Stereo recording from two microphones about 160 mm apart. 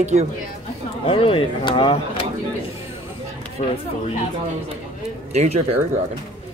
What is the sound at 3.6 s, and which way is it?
Speech, 50° left (ahead or behind).